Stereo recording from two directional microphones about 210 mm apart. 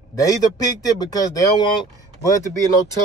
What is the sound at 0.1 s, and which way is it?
Speech, 15° left (ahead or behind).